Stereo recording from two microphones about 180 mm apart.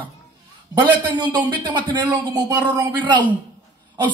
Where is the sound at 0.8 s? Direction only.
25° right (ahead or behind).